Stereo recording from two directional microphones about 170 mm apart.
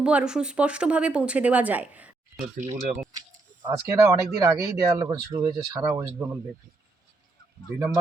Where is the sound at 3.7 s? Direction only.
20° right (ahead or behind).